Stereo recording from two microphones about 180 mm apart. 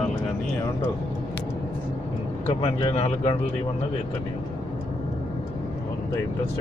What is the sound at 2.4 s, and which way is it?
Speech, 35° left (ahead or behind).